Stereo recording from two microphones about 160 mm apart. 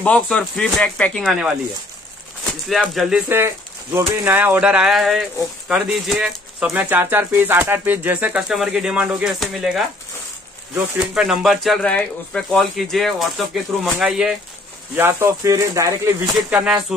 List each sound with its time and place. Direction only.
0.0 s speech: 5° left (ahead or behind)
2.7 s speech: centre (ahead or behind)
15.0 s speech: 15° right (ahead or behind)
16.3 s speech: 5° right (ahead or behind)